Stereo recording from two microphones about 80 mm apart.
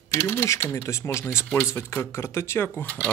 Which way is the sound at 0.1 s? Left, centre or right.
Left.